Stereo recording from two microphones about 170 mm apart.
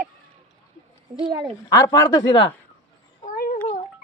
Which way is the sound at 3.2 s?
50° left (ahead or behind).